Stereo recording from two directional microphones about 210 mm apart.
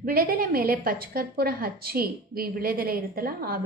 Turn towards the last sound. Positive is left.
turn(degrees=-45)  # may be behind; listen again after turning